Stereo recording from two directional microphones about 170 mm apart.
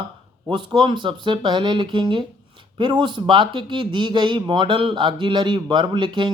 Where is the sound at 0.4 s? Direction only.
25° right (ahead or behind).